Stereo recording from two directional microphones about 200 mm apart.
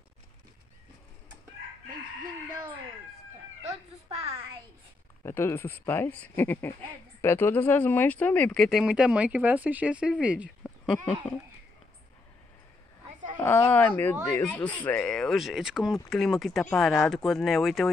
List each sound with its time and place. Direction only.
5.2 s speech: 10° left (ahead or behind); by 10.5 s 5° right (ahead or behind)
10.6 s a sound: 5° left (ahead or behind)
13.4 s speech: 10° left (ahead or behind)